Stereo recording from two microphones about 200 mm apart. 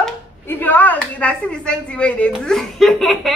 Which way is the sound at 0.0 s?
10° left (ahead or behind).